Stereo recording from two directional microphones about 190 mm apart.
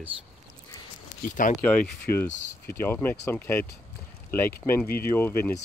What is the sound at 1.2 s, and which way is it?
Speech, 45° left (ahead or behind).